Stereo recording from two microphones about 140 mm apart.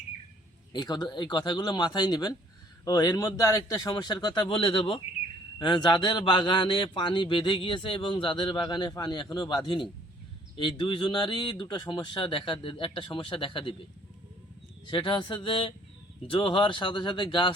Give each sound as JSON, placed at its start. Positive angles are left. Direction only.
{"t": 0.7, "sound": "a man's voice", "side_deg": 30}
{"t": 14.8, "sound": "a man's voice", "side_deg": 35}